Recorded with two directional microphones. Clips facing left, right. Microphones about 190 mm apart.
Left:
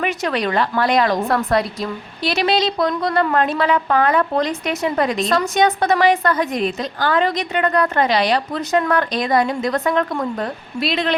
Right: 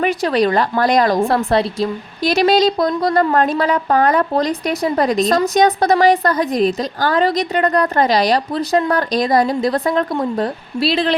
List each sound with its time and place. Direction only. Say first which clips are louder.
0.0 s a woman's voice: right 5 dB; 35° right (ahead or behind)
2.2 s a woman's voice: right 5 dB; 40° right (ahead or behind)